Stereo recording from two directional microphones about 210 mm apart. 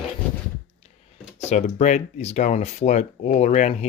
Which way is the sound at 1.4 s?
35° left (ahead or behind).